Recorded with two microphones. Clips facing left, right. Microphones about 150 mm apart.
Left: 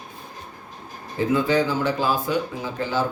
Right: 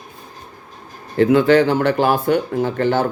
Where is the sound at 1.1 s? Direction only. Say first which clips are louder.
Right 8 dB; 70° right (ahead or behind).